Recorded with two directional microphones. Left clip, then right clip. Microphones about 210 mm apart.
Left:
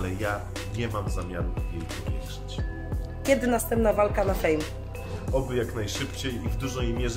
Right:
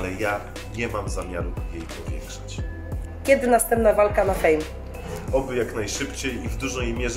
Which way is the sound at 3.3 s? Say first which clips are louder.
Right 6 dB; 25° left (ahead or behind).